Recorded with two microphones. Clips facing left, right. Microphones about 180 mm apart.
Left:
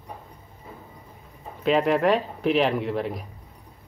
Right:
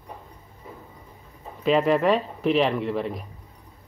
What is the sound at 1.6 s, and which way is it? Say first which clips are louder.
Speech: right 1 dB; centre (ahead or behind).